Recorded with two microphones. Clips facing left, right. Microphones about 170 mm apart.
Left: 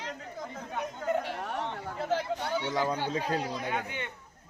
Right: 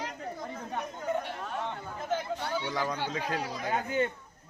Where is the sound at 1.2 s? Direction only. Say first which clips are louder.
Left 1 dB; 70° left (ahead or behind).